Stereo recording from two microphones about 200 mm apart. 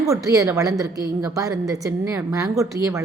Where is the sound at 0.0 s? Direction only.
15° right (ahead or behind).